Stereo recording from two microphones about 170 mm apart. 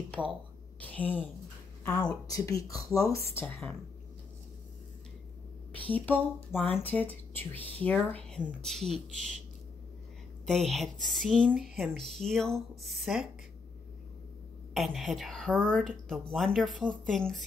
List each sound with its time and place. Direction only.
0.7 s a woman's voice: 10° left (ahead or behind)
2.2 s speech: 20° left (ahead or behind)
5.9 s speech: 10° left (ahead or behind)
6.5 s speech: 5° right (ahead or behind)
6.8 s speech: 10° left (ahead or behind)
10.4 s speech: centre (ahead or behind)
14.7 s speech: centre (ahead or behind)